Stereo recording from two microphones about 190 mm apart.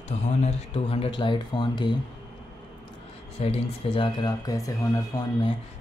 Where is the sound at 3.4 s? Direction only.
30° left (ahead or behind).